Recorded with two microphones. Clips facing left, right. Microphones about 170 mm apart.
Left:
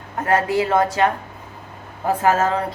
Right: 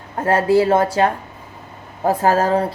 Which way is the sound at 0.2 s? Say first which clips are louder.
Right 4 dB; 30° right (ahead or behind).